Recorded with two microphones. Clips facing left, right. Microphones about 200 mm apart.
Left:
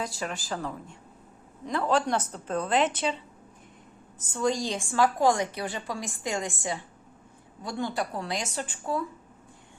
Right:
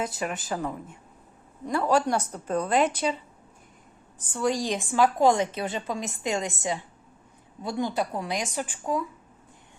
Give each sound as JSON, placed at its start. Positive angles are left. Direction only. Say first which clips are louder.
{"t": 0.2, "sound": "a woman's voice", "louder": "right 3 dB", "side_deg": 0}
{"t": 4.2, "sound": "a woman's voice", "louder": "right 1 dB", "side_deg": -10}